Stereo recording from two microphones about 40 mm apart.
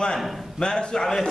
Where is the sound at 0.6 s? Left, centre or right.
Left.